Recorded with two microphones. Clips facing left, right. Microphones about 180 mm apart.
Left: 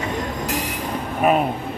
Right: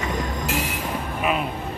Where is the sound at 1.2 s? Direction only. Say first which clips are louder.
Left 7 dB; 45° left (ahead or behind).